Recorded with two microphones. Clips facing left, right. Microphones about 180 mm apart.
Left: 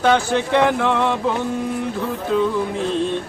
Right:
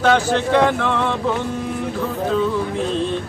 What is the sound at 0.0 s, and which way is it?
Speech, 15° left (ahead or behind).